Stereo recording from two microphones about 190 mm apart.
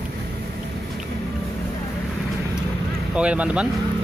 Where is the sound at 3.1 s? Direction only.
5° right (ahead or behind).